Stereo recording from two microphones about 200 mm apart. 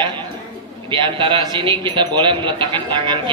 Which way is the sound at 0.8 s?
25° right (ahead or behind).